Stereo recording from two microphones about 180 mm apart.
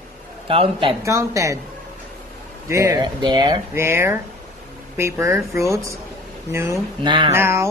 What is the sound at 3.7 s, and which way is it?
Speech, 15° right (ahead or behind).